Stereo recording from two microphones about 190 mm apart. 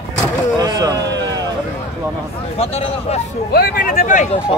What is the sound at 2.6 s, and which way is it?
Speech, 35° left (ahead or behind).